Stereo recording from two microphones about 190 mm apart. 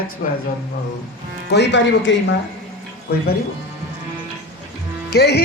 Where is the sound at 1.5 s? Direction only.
65° left (ahead or behind).